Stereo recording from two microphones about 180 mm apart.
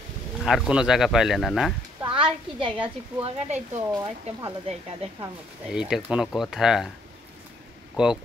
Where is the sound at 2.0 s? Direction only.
30° right (ahead or behind).